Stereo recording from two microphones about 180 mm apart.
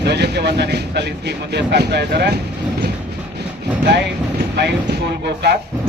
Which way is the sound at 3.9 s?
65° right (ahead or behind).